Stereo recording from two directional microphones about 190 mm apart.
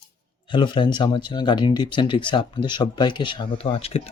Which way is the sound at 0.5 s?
25° left (ahead or behind).